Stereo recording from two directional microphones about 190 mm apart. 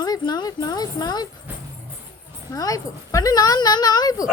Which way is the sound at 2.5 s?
20° left (ahead or behind).